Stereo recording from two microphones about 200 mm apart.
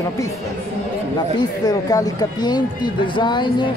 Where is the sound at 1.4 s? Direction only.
20° left (ahead or behind).